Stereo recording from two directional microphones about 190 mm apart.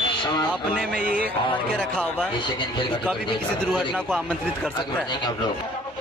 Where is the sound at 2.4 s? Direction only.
25° left (ahead or behind).